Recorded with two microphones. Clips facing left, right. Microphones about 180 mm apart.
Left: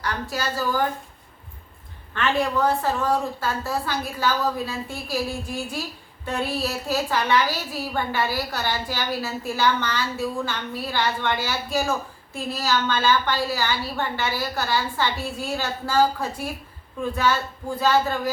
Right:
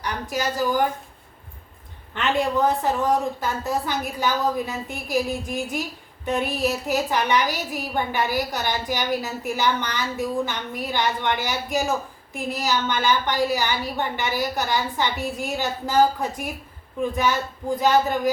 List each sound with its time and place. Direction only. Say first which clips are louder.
0.0 s a woman's voice: right 1 dB; 15° right (ahead or behind)
2.1 s a woman's voice: right 1 dB; 20° right (ahead or behind)